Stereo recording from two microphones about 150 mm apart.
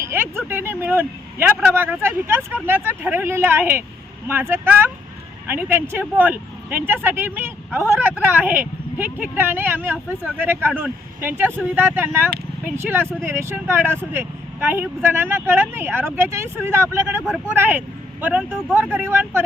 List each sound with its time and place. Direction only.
0.0 s speech: 15° right (ahead or behind)